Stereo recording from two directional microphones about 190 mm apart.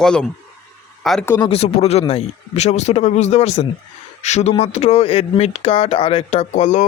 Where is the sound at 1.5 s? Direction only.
35° left (ahead or behind).